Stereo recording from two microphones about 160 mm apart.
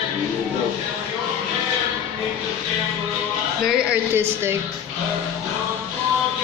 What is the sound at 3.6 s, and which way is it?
Speech, 10° right (ahead or behind).